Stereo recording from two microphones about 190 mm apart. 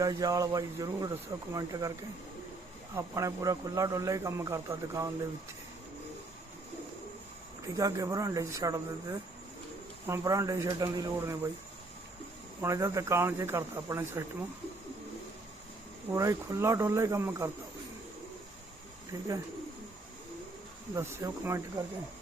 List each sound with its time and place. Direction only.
0.0 s speech: 20° right (ahead or behind)
2.9 s speech: 15° right (ahead or behind)
7.8 s speech: 20° right (ahead or behind)
12.6 s speech: 15° right (ahead or behind)
16.1 s speech: 15° right (ahead or behind)
20.9 s speech: 15° right (ahead or behind)